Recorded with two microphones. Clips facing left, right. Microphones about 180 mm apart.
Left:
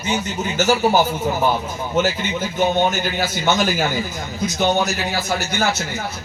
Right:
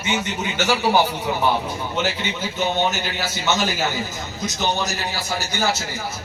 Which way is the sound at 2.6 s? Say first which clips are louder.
Left 4 dB; 50° left (ahead or behind).